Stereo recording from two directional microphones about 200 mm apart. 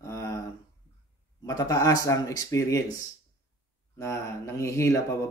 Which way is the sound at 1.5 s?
15° left (ahead or behind).